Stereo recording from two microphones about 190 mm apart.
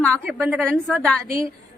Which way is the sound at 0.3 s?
5° right (ahead or behind).